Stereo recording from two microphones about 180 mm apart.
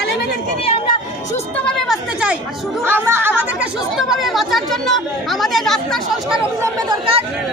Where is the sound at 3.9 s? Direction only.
Centre (ahead or behind).